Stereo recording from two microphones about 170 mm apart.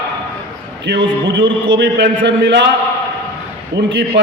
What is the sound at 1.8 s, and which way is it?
Speech, 90° right.